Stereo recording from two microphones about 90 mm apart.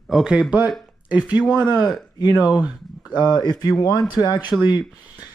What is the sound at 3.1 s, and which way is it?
Speech, 55° left (ahead or behind).